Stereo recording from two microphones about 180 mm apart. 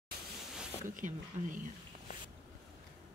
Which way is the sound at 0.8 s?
45° right (ahead or behind).